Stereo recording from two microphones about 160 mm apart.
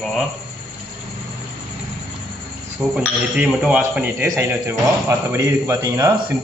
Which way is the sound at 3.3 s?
10° right (ahead or behind).